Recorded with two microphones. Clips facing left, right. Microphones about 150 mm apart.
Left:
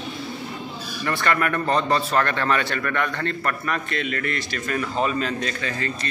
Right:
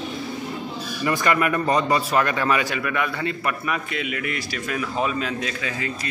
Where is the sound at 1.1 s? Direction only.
10° right (ahead or behind).